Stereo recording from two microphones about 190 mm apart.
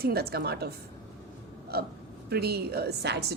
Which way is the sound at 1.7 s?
55° right (ahead or behind).